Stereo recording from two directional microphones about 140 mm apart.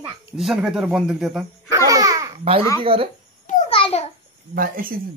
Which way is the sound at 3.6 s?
45° left (ahead or behind).